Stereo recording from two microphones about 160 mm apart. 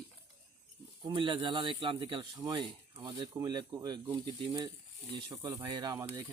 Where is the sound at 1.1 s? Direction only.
30° right (ahead or behind).